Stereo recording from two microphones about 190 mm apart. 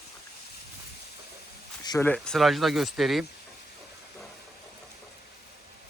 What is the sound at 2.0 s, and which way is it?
Speech, 5° left (ahead or behind).